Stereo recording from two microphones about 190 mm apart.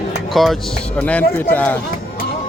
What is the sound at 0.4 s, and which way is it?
Speech, centre (ahead or behind).